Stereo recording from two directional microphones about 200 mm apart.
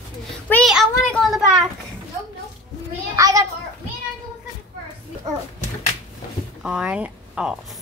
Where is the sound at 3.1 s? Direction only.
15° right (ahead or behind).